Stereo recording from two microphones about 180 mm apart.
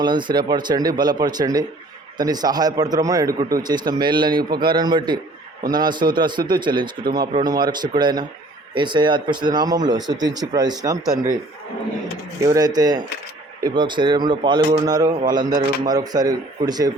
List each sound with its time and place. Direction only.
0.0 s speech: 25° right (ahead or behind)
12.5 s speech: 20° right (ahead or behind)